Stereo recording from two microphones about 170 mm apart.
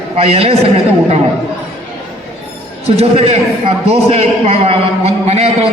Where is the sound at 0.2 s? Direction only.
35° right (ahead or behind).